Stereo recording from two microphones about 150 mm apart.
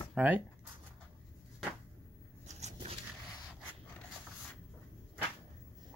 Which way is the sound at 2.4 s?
50° right (ahead or behind).